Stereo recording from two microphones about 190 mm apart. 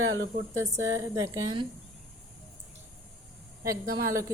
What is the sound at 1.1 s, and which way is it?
Speech, 15° right (ahead or behind).